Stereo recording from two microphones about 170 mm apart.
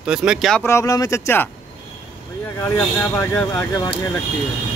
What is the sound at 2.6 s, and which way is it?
Speech, 10° left (ahead or behind).